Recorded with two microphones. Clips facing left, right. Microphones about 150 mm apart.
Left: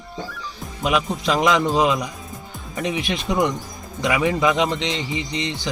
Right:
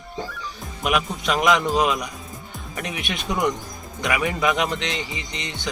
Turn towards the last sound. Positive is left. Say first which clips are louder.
# left 7 dB
turn(degrees=30)  # may be behind; listen again after turning